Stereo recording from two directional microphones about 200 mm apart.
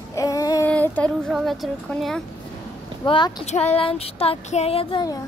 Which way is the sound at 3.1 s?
30° left (ahead or behind).